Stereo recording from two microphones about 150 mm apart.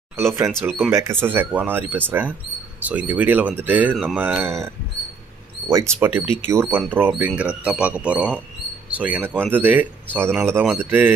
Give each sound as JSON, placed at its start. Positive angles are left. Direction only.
{"t": 0.2, "sound": "speech", "side_deg": -15}
{"t": 4.2, "sound": "speech", "side_deg": -15}
{"t": 5.7, "sound": "speech", "side_deg": -20}